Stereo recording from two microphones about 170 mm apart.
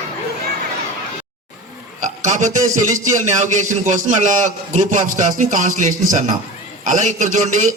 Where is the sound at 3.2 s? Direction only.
40° right (ahead or behind).